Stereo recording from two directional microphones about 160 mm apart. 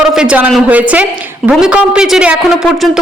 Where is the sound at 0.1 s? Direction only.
5° right (ahead or behind).